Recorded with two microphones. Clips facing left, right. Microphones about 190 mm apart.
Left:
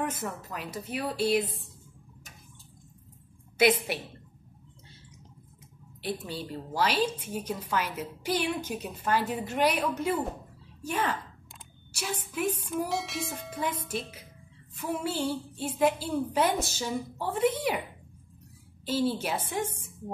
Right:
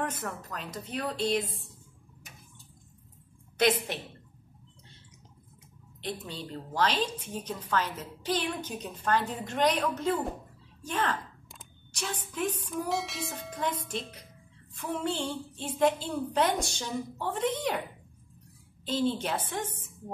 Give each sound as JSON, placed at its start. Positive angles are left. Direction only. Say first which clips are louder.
{"t": 0.0, "sound": "a woman's voice", "louder": "left 1 dB", "side_deg": 10}
{"t": 3.5, "sound": "a woman's voice", "louder": "left 2 dB", "side_deg": 10}
{"t": 5.9, "sound": "a woman's voice", "louder": "left 3 dB", "side_deg": 5}
{"t": 10.8, "sound": "a sound", "louder": "left 1 dB", "side_deg": 10}
{"t": 12.8, "sound": "a woman's voice", "louder": "even", "side_deg": 0}
{"t": 18.9, "sound": "a woman's voice", "louder": "left 1 dB", "side_deg": 10}